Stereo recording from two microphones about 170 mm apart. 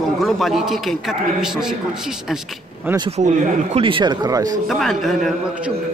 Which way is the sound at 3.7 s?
30° right (ahead or behind).